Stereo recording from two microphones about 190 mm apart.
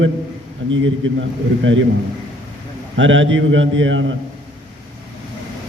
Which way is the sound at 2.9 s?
80° right.